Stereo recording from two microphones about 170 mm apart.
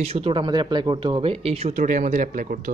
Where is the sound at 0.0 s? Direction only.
35° right (ahead or behind).